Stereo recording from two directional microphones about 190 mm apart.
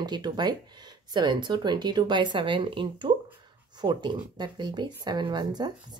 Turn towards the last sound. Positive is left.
turn(degrees=-20)  # may be behind; listen again after turning